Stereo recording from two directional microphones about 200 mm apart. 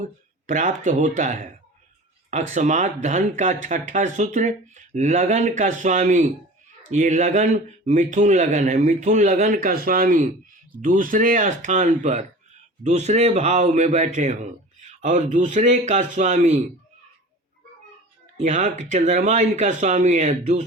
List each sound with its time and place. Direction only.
0.0 s speech: 40° right (ahead or behind)
18.3 s speech: 35° right (ahead or behind)